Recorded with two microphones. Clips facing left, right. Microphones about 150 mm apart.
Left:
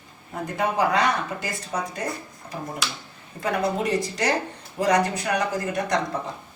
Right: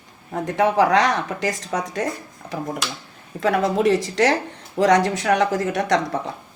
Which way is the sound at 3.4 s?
90° right.